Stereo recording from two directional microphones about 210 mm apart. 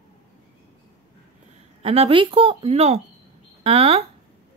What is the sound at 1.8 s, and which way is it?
A woman's voice, 25° right (ahead or behind).